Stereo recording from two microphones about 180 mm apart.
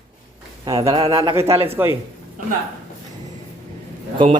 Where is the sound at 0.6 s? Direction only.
20° right (ahead or behind).